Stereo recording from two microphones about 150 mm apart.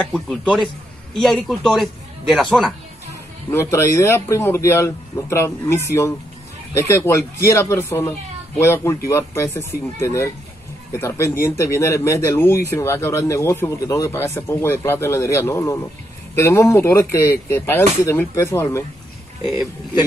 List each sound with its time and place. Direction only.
0.0 s a man's voice: 5° left (ahead or behind)
3.7 s speech: 15° left (ahead or behind)